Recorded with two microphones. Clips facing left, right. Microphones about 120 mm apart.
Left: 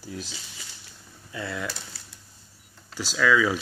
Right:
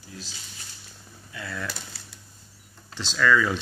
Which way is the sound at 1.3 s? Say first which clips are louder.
Left 4 dB; 25° left (ahead or behind).